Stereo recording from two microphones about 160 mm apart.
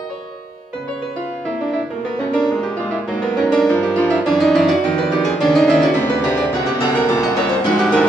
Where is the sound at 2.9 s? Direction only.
5° left (ahead or behind).